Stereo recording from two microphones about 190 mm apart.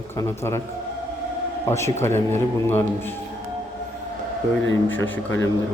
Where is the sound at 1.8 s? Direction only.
15° left (ahead or behind).